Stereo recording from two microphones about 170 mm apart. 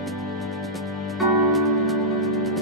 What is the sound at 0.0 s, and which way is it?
Music, centre (ahead or behind).